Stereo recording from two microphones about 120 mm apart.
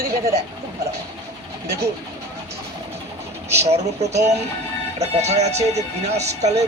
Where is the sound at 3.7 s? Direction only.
65° right (ahead or behind).